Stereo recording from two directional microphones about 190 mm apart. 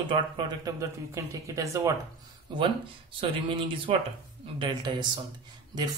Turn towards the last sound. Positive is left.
turn(degrees=-25)  # may be behind; listen again after turning